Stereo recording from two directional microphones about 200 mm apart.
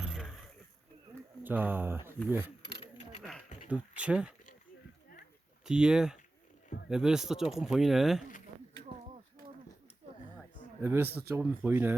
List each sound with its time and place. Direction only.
0.0 s a sound: centre (ahead or behind)
1.5 s speech: 10° right (ahead or behind)
3.7 s speech: 5° right (ahead or behind)
5.6 s speech: 5° right (ahead or behind)
10.8 s speech: 10° right (ahead or behind)